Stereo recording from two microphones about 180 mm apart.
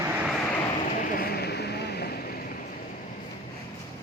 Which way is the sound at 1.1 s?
60° left (ahead or behind).